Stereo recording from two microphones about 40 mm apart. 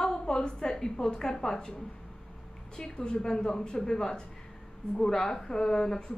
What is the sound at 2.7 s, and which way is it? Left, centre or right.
Speech, centre.